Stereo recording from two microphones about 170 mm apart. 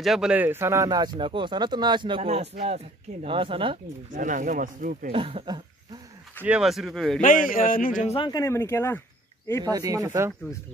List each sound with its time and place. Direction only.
0.0 s speech: centre (ahead or behind); by 3.7 s 30° right (ahead or behind)
4.1 s speech: 50° right (ahead or behind)
5.1 s speech: 35° right (ahead or behind)
6.4 s speech: 5° right (ahead or behind)
7.2 s a man's voice: 50° left (ahead or behind)
8.3 s speech: 20° left (ahead or behind)
9.7 s speech: 20° right (ahead or behind)